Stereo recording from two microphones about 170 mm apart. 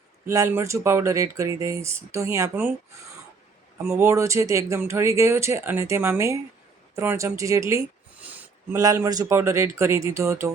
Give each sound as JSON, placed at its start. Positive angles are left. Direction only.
{"t": 0.3, "sound": "speech", "side_deg": -15}
{"t": 4.0, "sound": "speech", "side_deg": -15}